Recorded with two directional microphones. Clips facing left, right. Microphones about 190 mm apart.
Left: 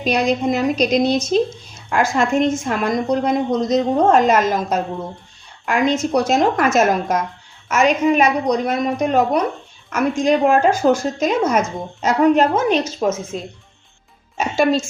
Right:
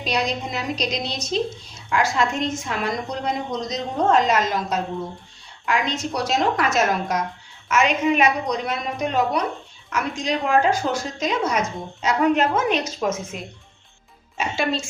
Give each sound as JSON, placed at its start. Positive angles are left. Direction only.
{"t": 0.0, "sound": "a woman's voice", "side_deg": 50}
{"t": 14.3, "sound": "a woman's voice", "side_deg": 45}